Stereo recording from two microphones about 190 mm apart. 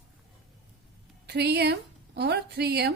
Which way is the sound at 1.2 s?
60° right (ahead or behind).